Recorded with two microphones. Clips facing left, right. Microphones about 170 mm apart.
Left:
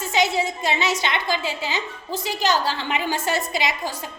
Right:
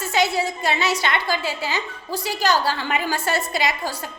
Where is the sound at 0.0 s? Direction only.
20° left (ahead or behind).